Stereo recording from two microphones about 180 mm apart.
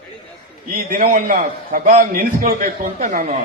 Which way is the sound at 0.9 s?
50° right (ahead or behind).